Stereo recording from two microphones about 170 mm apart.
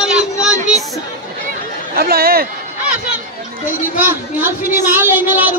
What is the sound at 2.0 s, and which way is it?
Speech, 65° right (ahead or behind).